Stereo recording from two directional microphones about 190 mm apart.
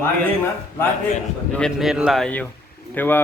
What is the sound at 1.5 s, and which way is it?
A man's voice, centre (ahead or behind).